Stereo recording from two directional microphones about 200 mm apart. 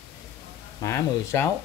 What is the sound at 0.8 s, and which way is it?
Speech, 15° left (ahead or behind).